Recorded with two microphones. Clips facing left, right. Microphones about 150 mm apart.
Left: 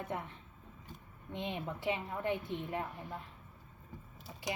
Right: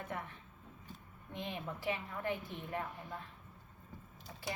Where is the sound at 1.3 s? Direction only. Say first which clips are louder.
Left 3 dB; 25° left (ahead or behind).